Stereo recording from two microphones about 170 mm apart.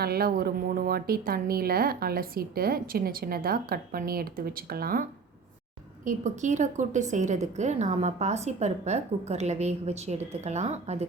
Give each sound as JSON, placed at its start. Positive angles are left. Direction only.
{"t": 0.0, "sound": "a woman's voice", "side_deg": -65}
{"t": 6.1, "sound": "a woman's voice", "side_deg": -45}